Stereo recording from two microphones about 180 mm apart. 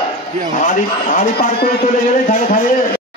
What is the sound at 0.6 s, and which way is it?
Speech, 45° left (ahead or behind).